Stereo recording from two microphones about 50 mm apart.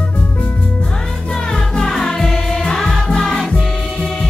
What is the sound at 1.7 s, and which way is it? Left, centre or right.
Music, centre.